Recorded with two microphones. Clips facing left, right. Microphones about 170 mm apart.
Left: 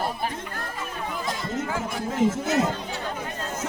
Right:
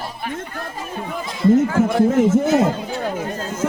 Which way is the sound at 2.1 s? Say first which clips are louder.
Right 8 dB; 50° right (ahead or behind).